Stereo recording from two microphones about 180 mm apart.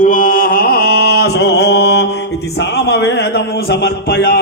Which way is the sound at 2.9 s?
75° left (ahead or behind).